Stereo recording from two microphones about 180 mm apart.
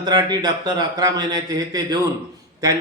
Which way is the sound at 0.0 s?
25° right (ahead or behind).